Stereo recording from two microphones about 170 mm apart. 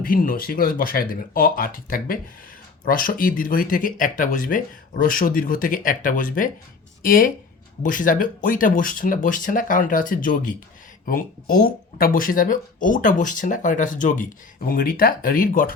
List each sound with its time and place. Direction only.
0.0 s speech: 55° left (ahead or behind)